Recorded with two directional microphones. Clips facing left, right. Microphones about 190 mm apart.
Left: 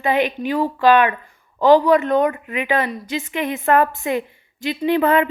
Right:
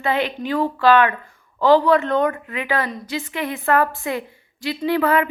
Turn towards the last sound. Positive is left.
turn(degrees=25)  # may be behind; listen again after turning